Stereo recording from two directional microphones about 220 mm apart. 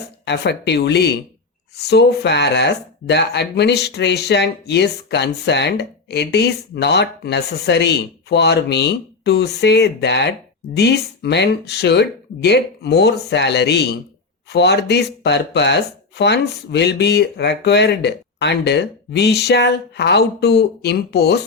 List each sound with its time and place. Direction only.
0.3 s speech: 50° left (ahead or behind)